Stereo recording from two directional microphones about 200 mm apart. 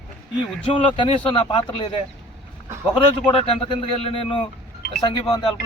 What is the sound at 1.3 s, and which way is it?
Speech, 25° left (ahead or behind).